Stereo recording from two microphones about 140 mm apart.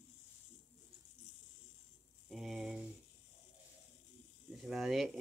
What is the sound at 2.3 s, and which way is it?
Speech, centre (ahead or behind).